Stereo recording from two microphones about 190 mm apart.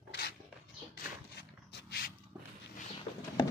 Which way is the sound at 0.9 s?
60° left (ahead or behind).